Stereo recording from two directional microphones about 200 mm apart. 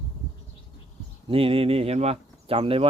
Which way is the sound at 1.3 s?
30° right (ahead or behind).